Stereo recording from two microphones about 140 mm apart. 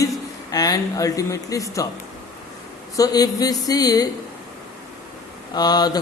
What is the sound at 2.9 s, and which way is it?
Speech, 25° left (ahead or behind).